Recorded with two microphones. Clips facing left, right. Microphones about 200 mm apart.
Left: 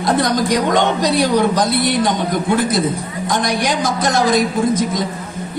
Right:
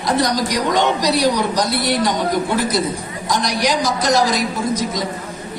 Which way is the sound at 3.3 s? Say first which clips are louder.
Even; 50° left (ahead or behind).